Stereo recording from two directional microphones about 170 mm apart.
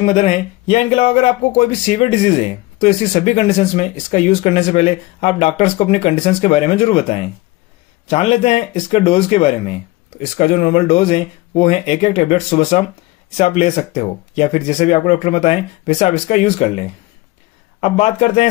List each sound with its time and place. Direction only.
0.0 s speech: 40° left (ahead or behind)